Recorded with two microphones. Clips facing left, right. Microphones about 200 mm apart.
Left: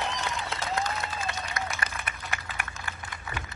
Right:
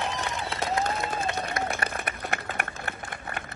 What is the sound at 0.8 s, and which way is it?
Applause, 55° right (ahead or behind).